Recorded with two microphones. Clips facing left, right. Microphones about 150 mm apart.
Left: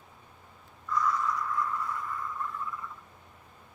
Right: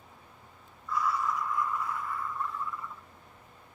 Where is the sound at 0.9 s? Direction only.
10° right (ahead or behind).